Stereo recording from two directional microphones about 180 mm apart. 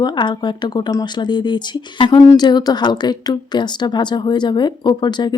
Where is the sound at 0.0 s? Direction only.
25° left (ahead or behind).